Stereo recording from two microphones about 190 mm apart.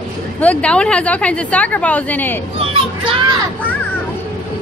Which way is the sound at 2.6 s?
30° right (ahead or behind).